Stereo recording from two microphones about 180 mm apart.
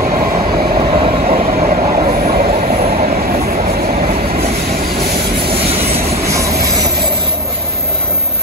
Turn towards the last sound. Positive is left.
turn(degrees=-15)  # may be behind; listen again after turning